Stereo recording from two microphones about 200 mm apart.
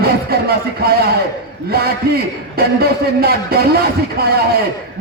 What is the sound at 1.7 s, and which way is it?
Speech, 50° right (ahead or behind).